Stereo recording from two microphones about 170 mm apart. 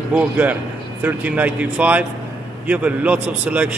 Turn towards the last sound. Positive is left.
turn(degrees=-10)  # may be behind; listen again after turning